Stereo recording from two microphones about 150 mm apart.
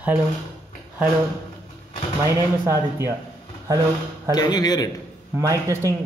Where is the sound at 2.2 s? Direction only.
20° right (ahead or behind).